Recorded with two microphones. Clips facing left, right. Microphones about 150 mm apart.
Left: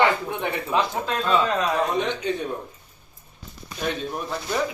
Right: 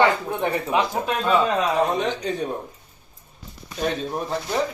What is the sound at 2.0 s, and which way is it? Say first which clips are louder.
Speech: even; 40° right (ahead or behind).